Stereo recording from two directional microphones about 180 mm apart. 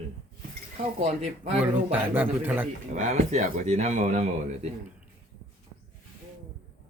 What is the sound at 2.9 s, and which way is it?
Speech, 40° right (ahead or behind).